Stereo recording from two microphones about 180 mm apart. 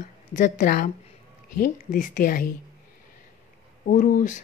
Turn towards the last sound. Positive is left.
turn(degrees=45)  # may be behind; listen again after turning